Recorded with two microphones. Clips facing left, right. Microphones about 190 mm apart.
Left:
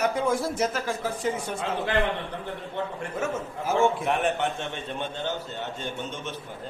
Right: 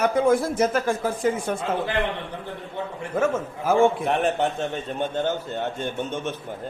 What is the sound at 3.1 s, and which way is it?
Speech, 50° right (ahead or behind).